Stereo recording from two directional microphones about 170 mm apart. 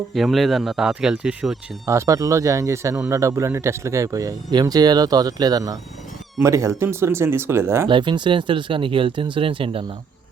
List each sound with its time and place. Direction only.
0.1 s speech: centre (ahead or behind)
7.9 s speech: 30° right (ahead or behind)